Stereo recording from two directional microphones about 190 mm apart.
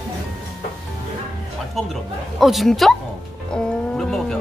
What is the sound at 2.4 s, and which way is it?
Speech, centre (ahead or behind).